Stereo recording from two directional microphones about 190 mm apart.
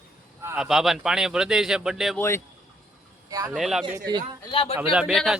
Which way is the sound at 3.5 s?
Centre (ahead or behind).